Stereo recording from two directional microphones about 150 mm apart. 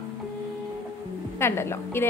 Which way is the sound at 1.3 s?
15° left (ahead or behind).